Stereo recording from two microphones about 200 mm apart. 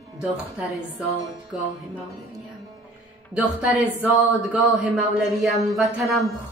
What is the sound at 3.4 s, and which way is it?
Speech, 5° right (ahead or behind).